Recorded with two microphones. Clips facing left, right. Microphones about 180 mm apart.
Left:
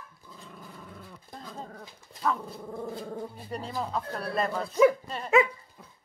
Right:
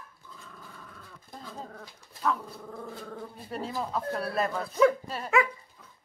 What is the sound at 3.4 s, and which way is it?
Speech, centre (ahead or behind).